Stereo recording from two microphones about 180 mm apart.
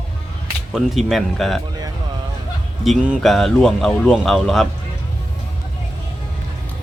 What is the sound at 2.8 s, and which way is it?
Speech, centre (ahead or behind).